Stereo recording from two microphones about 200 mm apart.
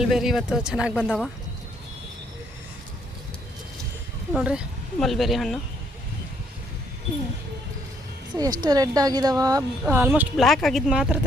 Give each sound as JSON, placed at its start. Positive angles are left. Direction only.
{"t": 0.0, "sound": "speech", "side_deg": 0}
{"t": 4.4, "sound": "speech", "side_deg": 0}
{"t": 8.6, "sound": "a woman's voice", "side_deg": -20}